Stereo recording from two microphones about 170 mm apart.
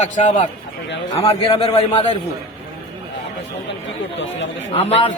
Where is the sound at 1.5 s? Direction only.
35° left (ahead or behind).